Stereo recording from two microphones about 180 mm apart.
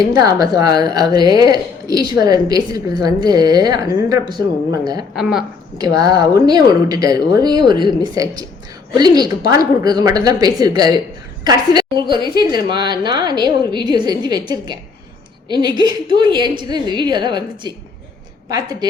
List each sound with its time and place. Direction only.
0.1 s a woman's voice: 20° right (ahead or behind)
5.1 s speech: centre (ahead or behind)
6.0 s a woman's voice: 20° right (ahead or behind)